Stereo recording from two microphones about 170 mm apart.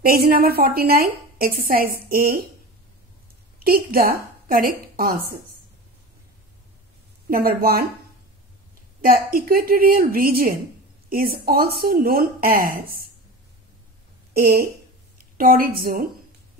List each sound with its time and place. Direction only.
0.0 s a woman's voice: 60° right (ahead or behind)
3.5 s a woman's voice: 60° right (ahead or behind)
7.2 s a woman's voice: 60° right (ahead or behind)
9.0 s a woman's voice: 60° right (ahead or behind)
14.3 s a woman's voice: 60° right (ahead or behind)